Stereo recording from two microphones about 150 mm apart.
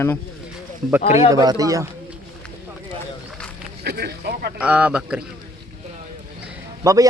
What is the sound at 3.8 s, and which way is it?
Speech, 90° right.